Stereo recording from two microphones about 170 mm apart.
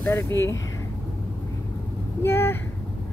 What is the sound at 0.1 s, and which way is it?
Speech, 15° left (ahead or behind).